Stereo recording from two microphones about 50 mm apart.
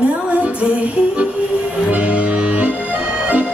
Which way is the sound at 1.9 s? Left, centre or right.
Right.